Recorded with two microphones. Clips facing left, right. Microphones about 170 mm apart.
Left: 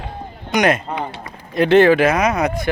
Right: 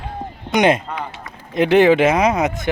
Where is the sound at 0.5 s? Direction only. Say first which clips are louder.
Right 1 dB; 25° right (ahead or behind).